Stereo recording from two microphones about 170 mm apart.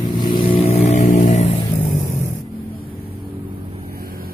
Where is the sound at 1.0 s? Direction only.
50° left (ahead or behind).